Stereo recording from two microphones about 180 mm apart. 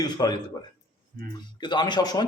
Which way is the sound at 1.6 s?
25° left (ahead or behind).